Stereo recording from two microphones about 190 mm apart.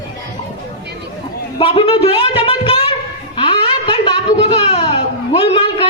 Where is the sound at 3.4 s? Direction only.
25° left (ahead or behind).